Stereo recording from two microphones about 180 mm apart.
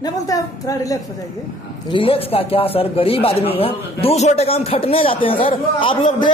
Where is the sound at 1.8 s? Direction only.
30° left (ahead or behind).